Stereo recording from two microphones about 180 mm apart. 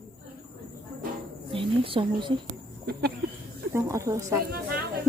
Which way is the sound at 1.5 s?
30° right (ahead or behind).